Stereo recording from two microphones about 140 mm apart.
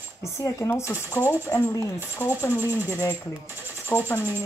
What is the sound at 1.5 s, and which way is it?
Speech, 25° left (ahead or behind).